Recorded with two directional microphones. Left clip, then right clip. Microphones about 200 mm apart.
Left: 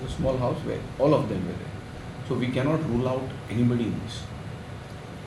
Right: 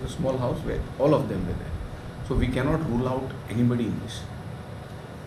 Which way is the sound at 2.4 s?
Centre (ahead or behind).